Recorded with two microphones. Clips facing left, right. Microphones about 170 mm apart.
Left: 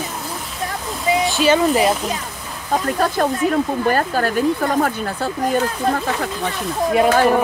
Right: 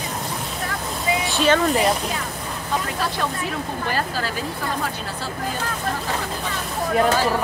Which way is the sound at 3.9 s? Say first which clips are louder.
Left 7 dB; 50° left (ahead or behind).